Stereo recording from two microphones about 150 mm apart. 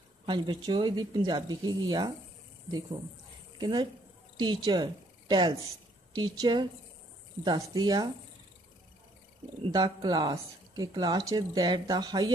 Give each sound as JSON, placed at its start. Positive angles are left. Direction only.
{"t": 0.3, "sound": "speech", "side_deg": -30}
{"t": 3.5, "sound": "speech", "side_deg": -30}
{"t": 9.6, "sound": "speech", "side_deg": -25}